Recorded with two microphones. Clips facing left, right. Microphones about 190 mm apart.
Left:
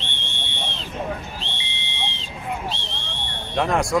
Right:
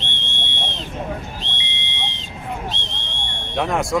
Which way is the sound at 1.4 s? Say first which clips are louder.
Right 2 dB; 20° right (ahead or behind).